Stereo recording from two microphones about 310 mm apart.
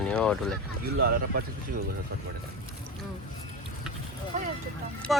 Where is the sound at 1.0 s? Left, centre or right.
Right.